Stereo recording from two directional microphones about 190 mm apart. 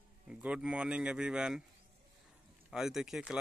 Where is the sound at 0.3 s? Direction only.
5° right (ahead or behind).